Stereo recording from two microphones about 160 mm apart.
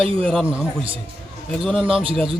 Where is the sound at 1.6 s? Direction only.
Centre (ahead or behind).